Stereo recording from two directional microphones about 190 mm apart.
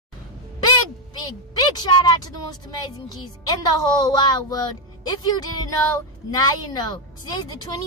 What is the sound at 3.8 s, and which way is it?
A woman's voice, 20° left (ahead or behind).